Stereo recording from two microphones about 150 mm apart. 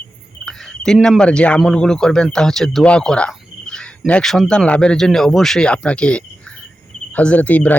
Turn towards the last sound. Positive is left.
turn(degrees=10)  # may be behind; listen again after turning